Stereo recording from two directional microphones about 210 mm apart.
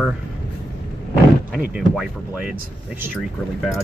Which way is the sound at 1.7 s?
5° right (ahead or behind).